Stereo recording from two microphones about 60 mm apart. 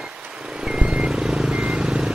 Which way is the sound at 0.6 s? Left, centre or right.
Centre.